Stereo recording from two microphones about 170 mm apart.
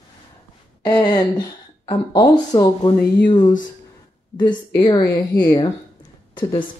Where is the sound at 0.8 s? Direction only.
25° left (ahead or behind).